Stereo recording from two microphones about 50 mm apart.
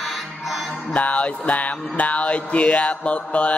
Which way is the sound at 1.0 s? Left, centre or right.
Left.